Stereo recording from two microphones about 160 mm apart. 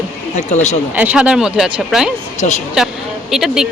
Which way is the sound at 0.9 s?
10° right (ahead or behind).